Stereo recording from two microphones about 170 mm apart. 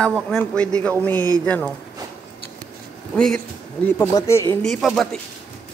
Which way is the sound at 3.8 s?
15° left (ahead or behind).